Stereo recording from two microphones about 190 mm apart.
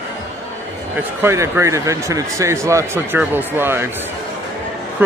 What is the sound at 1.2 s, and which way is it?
Speech, 15° right (ahead or behind).